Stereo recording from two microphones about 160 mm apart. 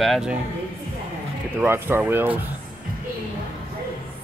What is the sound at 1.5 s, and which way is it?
Speech, 15° right (ahead or behind).